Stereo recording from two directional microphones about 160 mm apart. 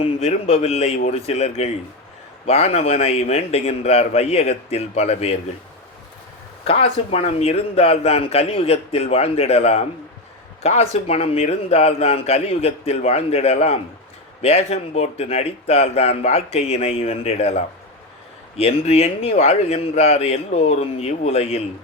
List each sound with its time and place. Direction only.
0.0 s speech: 40° left (ahead or behind)
6.7 s speech: 40° left (ahead or behind)